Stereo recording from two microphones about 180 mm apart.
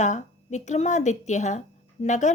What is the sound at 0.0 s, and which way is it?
A woman's voice, 40° left (ahead or behind).